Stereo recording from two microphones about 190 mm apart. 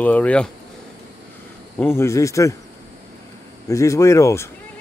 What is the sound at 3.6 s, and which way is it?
Speech, 15° left (ahead or behind).